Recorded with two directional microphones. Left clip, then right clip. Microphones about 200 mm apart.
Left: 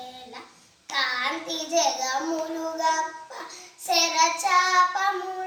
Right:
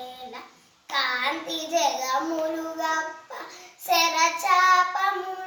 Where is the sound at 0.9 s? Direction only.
5° left (ahead or behind).